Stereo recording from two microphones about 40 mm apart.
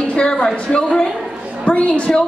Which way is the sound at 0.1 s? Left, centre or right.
Left.